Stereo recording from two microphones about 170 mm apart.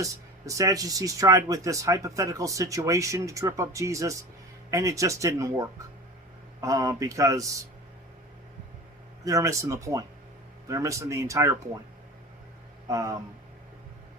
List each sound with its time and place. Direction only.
0.0 s speech: 20° right (ahead or behind)
9.2 s speech: 20° right (ahead or behind)
12.9 s speech: 20° right (ahead or behind)